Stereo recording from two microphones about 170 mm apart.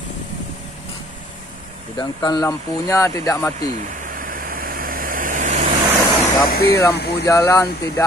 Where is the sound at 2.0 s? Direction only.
25° left (ahead or behind).